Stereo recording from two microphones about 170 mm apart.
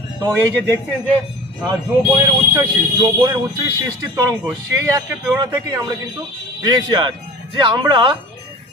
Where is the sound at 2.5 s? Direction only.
20° right (ahead or behind).